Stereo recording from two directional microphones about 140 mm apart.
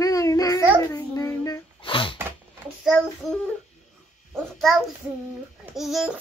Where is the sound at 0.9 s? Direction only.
25° left (ahead or behind).